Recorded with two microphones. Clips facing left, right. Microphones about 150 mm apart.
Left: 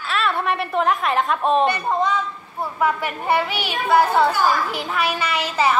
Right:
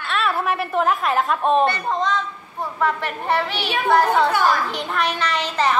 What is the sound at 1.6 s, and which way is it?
A woman's voice, 10° left (ahead or behind).